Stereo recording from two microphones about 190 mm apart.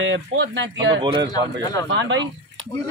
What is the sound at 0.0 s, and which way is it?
Speech, 70° right (ahead or behind).